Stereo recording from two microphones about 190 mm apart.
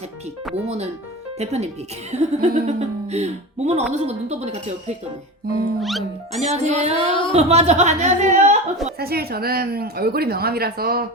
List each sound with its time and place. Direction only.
1.4 s speech: 35° right (ahead or behind)
5.5 s music: 50° right (ahead or behind)
5.8 s speech: centre (ahead or behind)
6.4 s speech: 35° right (ahead or behind)
9.0 s a woman's voice: 55° right (ahead or behind)